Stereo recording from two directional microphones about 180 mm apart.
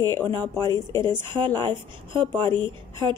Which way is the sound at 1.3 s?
25° right (ahead or behind).